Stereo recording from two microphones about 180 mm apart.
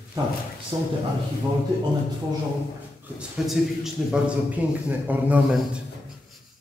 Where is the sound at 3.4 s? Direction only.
Centre (ahead or behind).